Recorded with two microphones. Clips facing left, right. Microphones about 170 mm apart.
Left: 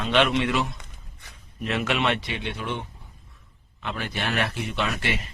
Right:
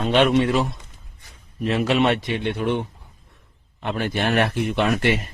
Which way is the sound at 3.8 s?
50° right (ahead or behind).